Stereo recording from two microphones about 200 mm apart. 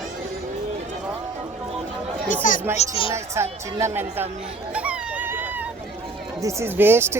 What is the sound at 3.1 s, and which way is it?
Speech, 15° right (ahead or behind).